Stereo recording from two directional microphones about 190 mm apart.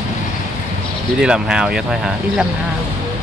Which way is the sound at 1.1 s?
5° right (ahead or behind).